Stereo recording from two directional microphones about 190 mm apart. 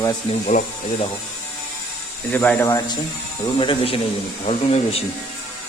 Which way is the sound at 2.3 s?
10° left (ahead or behind).